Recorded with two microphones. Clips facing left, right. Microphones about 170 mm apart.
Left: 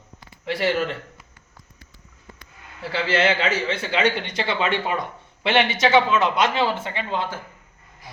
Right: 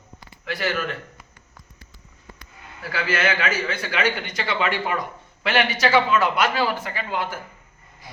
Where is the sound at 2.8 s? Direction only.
25° left (ahead or behind).